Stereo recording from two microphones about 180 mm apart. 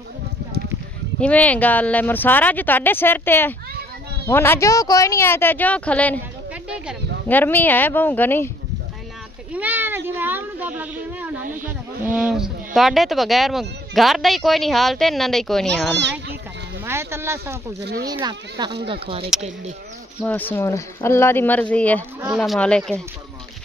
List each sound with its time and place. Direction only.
1.2 s speech: 10° left (ahead or behind)
7.2 s speech: 10° left (ahead or behind)
9.5 s a child's voice: 10° right (ahead or behind)
16.0 s a child's voice: 75° right (ahead or behind)
16.8 s speech: 15° right (ahead or behind); by 19.2 s 30° right (ahead or behind)
20.2 s speech: 10° left (ahead or behind)